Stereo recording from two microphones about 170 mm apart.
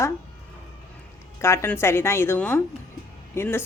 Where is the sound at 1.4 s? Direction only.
15° left (ahead or behind).